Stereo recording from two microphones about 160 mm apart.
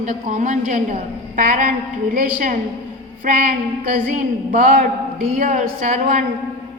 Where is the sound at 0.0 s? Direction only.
50° right (ahead or behind).